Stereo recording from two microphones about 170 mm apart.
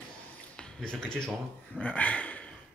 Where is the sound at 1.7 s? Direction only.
10° left (ahead or behind).